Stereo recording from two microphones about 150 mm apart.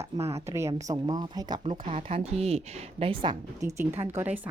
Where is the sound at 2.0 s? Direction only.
40° right (ahead or behind).